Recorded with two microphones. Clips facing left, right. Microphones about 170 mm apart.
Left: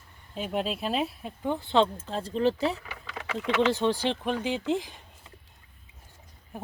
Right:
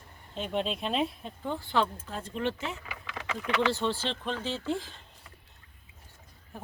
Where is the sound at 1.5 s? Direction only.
20° left (ahead or behind).